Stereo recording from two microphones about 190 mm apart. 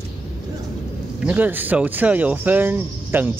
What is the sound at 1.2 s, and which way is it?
Speech, 10° right (ahead or behind).